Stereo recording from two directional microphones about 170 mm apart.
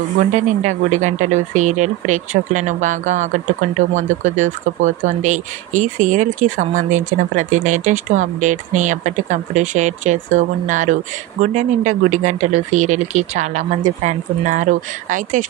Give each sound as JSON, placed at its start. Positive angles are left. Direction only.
{"t": 0.2, "sound": "speech", "side_deg": -45}